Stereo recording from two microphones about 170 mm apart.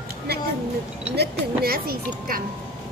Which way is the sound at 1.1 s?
70° right (ahead or behind).